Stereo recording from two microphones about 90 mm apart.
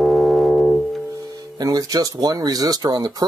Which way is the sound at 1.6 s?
40° right (ahead or behind).